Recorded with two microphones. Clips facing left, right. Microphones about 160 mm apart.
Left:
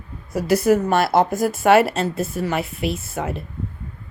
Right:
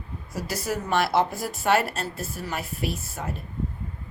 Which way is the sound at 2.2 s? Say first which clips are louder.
Left 9 dB; 65° left (ahead or behind).